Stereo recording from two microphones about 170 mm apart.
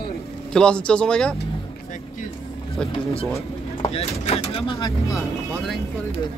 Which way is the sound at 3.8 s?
35° left (ahead or behind).